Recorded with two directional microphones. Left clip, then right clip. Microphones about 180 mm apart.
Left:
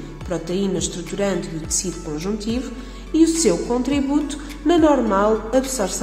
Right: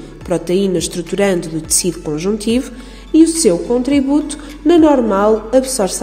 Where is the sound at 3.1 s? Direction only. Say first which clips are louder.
Right 6 dB; 25° right (ahead or behind).